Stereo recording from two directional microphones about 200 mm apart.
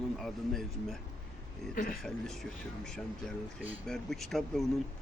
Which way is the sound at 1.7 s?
40° left (ahead or behind).